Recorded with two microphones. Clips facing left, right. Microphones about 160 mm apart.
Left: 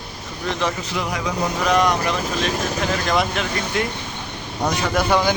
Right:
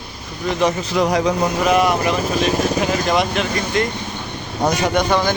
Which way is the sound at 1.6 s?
5° right (ahead or behind).